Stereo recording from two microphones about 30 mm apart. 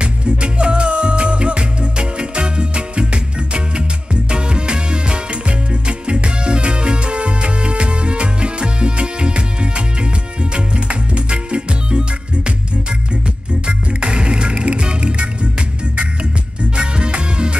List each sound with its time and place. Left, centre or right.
0.0 s music: right
13.7 s music: right
16.7 s music: right